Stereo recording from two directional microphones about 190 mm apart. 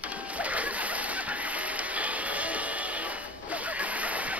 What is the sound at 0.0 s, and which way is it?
Splash, 5° right (ahead or behind).